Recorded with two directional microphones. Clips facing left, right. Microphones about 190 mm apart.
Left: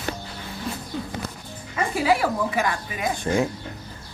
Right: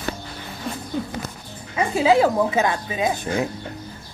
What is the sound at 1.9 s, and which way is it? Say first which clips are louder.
Speech: right 5 dB; 20° right (ahead or behind).